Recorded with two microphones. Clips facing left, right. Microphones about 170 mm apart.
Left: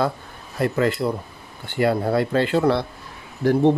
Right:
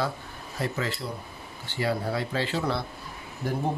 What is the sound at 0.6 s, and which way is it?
Speech, 60° left (ahead or behind).